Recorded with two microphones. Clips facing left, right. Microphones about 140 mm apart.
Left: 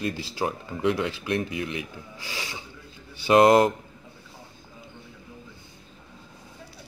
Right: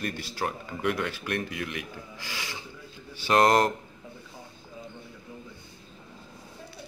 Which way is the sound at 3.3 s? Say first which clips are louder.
Left 5 dB; 10° left (ahead or behind).